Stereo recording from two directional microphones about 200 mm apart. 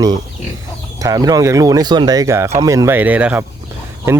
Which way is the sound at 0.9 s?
15° right (ahead or behind).